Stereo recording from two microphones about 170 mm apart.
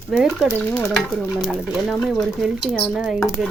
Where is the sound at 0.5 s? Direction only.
10° left (ahead or behind).